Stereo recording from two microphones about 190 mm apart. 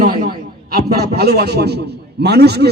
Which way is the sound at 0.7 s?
55° right (ahead or behind).